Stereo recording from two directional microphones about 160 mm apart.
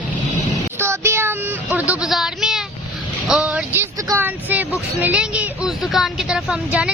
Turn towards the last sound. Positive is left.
turn(degrees=-5)  # may be behind; listen again after turning